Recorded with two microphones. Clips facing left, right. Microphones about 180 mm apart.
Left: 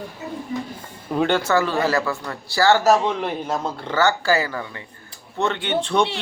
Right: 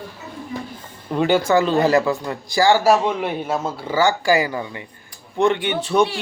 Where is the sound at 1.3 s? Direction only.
15° right (ahead or behind).